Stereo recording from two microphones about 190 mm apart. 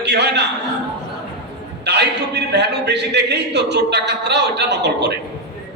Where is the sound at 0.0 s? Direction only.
60° right (ahead or behind).